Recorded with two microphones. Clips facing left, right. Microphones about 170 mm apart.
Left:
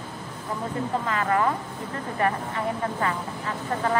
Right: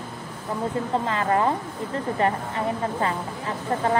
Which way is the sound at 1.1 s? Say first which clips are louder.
Right 1 dB; 25° right (ahead or behind).